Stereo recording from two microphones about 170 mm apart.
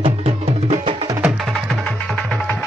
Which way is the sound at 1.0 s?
15° right (ahead or behind).